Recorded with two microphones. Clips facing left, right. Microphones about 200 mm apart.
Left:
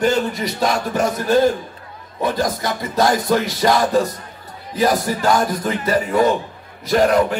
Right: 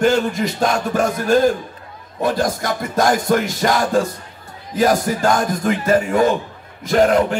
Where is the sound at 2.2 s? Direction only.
50° right (ahead or behind).